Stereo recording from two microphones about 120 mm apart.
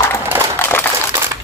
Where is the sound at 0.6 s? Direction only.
15° left (ahead or behind).